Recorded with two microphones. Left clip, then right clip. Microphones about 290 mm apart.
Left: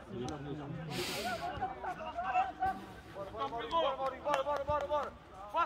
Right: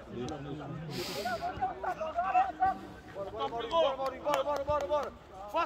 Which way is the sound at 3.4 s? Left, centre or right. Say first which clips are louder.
Right 4 dB; right.